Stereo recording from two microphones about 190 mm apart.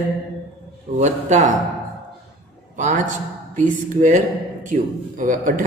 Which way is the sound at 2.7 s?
40° right (ahead or behind).